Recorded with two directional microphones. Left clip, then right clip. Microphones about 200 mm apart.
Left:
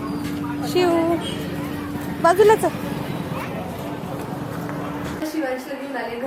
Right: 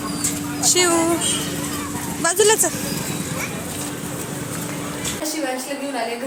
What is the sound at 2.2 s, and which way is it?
Speech, 5° right (ahead or behind).